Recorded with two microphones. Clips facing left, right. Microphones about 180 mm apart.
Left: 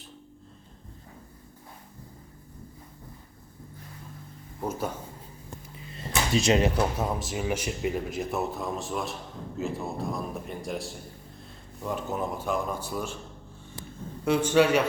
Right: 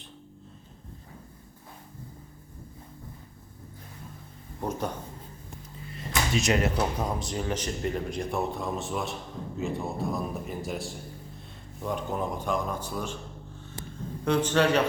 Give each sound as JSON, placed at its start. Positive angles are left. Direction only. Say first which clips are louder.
{"t": 4.6, "sound": "speech", "louder": "even", "side_deg": 5}
{"t": 6.0, "sound": "a sound", "louder": "left 2 dB", "side_deg": 30}
{"t": 6.7, "sound": "speech", "louder": "left 1 dB", "side_deg": 5}
{"t": 14.3, "sound": "a man's voice", "louder": "left 2 dB", "side_deg": 10}